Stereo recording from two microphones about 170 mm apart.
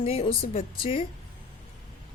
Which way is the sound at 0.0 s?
35° left (ahead or behind).